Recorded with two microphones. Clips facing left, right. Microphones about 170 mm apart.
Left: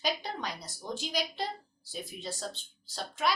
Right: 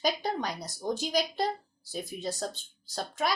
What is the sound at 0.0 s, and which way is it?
A woman's voice, 45° right (ahead or behind).